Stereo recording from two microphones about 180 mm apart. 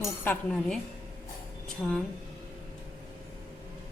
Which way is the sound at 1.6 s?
5° left (ahead or behind).